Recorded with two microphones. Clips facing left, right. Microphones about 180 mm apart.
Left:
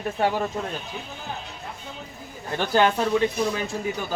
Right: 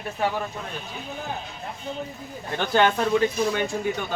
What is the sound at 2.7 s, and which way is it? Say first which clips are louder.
Speech: even; centre (ahead or behind).